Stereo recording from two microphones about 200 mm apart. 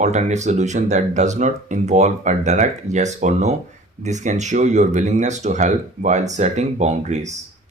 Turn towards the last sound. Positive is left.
turn(degrees=-35)  # may be behind; listen again after turning